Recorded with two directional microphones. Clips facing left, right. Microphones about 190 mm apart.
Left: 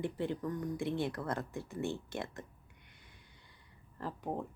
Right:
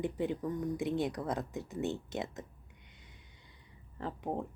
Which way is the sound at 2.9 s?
20° right (ahead or behind).